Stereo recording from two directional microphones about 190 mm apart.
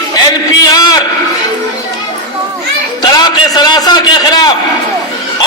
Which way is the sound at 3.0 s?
20° left (ahead or behind).